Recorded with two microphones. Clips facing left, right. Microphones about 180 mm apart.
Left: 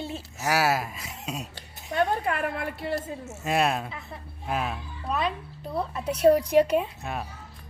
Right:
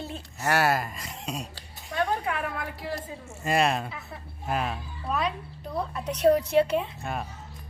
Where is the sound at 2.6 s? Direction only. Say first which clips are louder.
Left 3 dB; 65° left (ahead or behind).